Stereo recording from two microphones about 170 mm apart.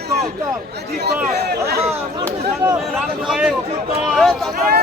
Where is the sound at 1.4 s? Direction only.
70° right (ahead or behind).